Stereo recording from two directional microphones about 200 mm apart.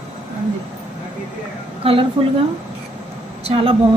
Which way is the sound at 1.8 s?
25° right (ahead or behind).